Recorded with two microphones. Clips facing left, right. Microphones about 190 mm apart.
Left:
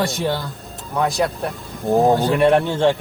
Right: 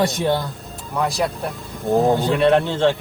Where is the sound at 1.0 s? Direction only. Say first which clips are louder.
Left 2 dB; centre (ahead or behind).